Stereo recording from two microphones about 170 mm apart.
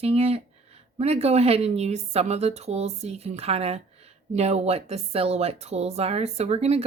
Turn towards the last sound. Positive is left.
turn(degrees=-40)  # may be behind; listen again after turning